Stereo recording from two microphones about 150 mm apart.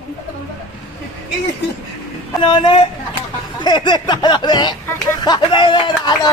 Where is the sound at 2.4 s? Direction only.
35° left (ahead or behind).